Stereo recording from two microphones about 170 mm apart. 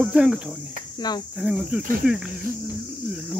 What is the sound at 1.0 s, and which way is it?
Cricket, 25° left (ahead or behind).